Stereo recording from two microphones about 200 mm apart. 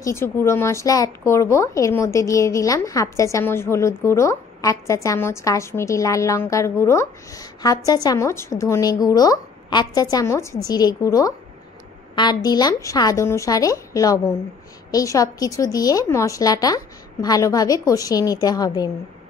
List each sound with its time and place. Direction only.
0.0 s speech: 15° left (ahead or behind)